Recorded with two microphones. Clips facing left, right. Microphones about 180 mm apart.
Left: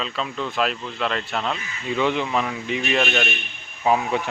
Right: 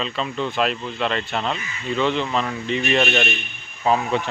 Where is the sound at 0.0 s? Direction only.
Centre (ahead or behind).